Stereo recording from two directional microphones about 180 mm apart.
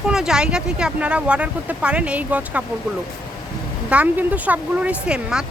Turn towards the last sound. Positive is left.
turn(degrees=-5)  # may be behind; listen again after turning